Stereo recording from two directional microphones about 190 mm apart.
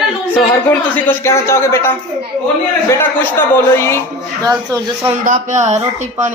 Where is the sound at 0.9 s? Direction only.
10° left (ahead or behind).